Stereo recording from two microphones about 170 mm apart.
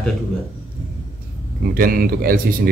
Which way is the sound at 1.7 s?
60° right (ahead or behind).